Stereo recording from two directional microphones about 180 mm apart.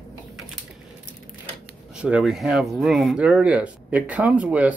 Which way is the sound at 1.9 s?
5° right (ahead or behind).